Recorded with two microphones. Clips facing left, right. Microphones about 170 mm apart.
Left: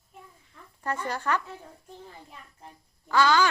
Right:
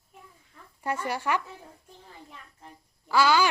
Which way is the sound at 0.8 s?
10° right (ahead or behind).